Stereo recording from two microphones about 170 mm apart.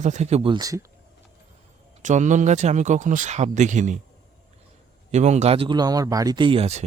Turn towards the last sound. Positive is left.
turn(degrees=-40)  # may be behind; listen again after turning